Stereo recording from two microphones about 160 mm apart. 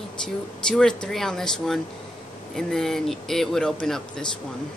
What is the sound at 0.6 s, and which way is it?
Speech, 5° left (ahead or behind).